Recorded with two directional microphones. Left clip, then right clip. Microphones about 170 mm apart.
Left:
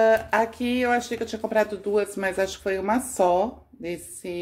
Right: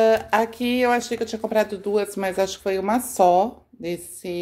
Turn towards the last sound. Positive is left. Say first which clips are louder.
# right 3 dB
turn(degrees=-25)  # may be behind; listen again after turning